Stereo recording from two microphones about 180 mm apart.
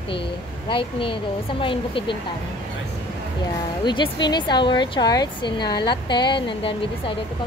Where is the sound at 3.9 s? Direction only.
25° left (ahead or behind).